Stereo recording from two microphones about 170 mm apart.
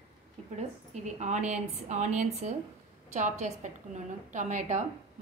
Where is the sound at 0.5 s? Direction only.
40° right (ahead or behind).